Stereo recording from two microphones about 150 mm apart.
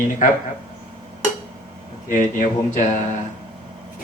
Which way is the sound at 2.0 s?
60° left (ahead or behind).